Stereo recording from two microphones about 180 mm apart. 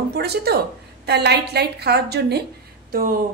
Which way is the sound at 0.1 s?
60° right (ahead or behind).